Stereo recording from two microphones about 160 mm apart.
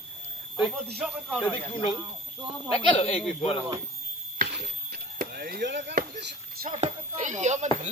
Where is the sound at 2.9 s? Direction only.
40° left (ahead or behind).